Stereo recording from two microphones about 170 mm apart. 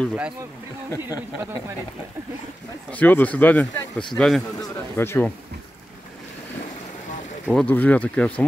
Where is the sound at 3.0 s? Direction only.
10° left (ahead or behind).